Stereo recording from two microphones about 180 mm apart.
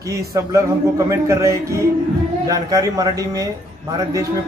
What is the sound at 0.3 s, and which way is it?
A man's voice, 15° right (ahead or behind).